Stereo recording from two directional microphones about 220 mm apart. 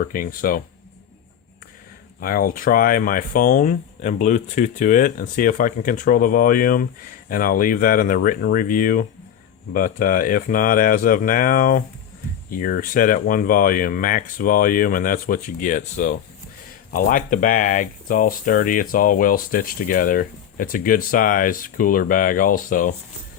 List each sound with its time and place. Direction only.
0.0 s speech: 40° left (ahead or behind)
2.2 s speech: 40° left (ahead or behind)